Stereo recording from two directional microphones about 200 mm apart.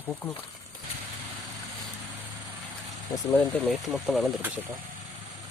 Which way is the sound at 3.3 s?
5° left (ahead or behind).